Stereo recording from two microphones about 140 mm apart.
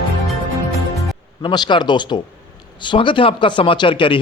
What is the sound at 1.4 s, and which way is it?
Speech, 30° left (ahead or behind).